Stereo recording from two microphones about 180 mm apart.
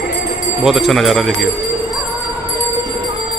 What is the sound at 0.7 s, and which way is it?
Speech, centre (ahead or behind).